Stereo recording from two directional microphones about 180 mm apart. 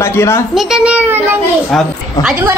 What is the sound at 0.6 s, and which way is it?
Speech, 5° right (ahead or behind).